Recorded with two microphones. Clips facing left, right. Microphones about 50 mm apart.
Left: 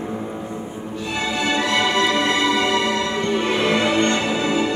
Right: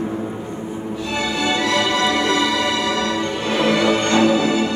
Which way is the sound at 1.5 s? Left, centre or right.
Left.